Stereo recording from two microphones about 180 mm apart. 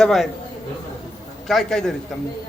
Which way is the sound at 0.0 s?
Centre (ahead or behind).